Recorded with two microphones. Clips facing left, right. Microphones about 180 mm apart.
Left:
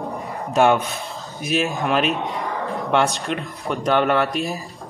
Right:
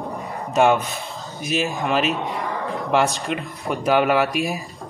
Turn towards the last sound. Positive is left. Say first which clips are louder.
# right 1 dB
turn(degrees=-5)  # may be behind; listen again after turning